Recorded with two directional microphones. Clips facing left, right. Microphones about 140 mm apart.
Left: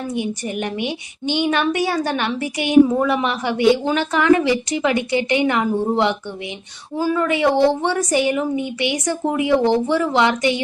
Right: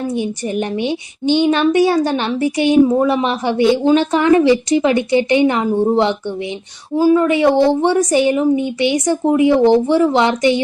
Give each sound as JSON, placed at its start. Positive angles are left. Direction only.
{"t": 0.2, "sound": "a child's voice", "side_deg": -30}
{"t": 6.9, "sound": "a child's voice", "side_deg": -20}